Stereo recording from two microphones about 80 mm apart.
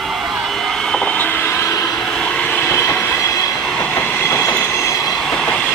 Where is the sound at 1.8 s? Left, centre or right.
Centre.